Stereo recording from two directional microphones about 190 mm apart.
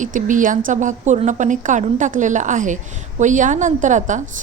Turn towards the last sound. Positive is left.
turn(degrees=-40)  # may be behind; listen again after turning